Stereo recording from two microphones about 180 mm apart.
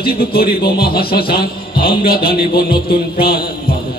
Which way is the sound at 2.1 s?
60° left (ahead or behind).